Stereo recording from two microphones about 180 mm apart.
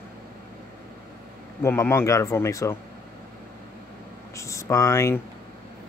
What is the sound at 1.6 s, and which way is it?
Speech, 15° left (ahead or behind).